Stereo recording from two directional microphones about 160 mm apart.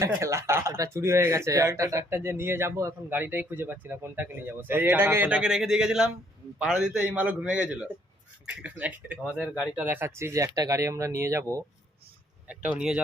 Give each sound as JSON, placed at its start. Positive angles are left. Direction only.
{"t": 0.0, "sound": "a man's voice", "side_deg": -20}
{"t": 12.5, "sound": "a man's voice", "side_deg": -5}